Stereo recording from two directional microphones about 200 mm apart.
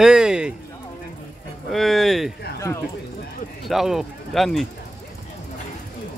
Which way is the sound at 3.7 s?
Centre (ahead or behind).